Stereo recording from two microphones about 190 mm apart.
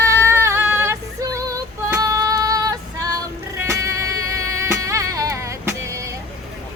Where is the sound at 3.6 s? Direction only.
15° right (ahead or behind).